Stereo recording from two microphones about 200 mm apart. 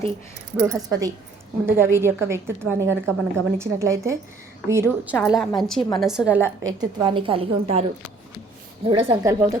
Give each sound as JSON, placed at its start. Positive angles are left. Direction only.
{"t": 0.6, "sound": "a woman's voice", "side_deg": -15}
{"t": 6.6, "sound": "a woman's voice", "side_deg": -20}
{"t": 8.9, "sound": "a woman's voice", "side_deg": -25}
{"t": 9.2, "sound": "a woman's voice", "side_deg": -15}